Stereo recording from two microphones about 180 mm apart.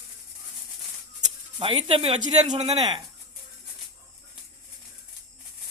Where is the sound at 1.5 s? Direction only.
30° right (ahead or behind).